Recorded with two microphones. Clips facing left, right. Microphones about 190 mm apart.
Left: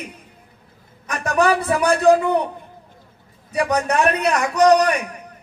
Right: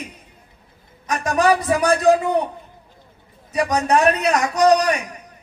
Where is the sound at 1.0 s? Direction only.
55° left (ahead or behind).